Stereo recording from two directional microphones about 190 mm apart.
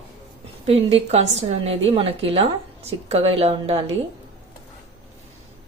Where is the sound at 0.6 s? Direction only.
30° right (ahead or behind).